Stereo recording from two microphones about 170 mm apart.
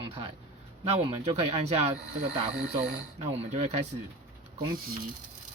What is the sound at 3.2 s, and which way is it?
Speech, 40° right (ahead or behind).